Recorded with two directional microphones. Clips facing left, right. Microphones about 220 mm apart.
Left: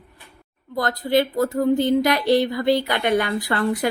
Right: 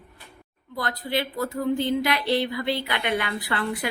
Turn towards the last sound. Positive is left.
turn(degrees=40)  # may be behind; listen again after turning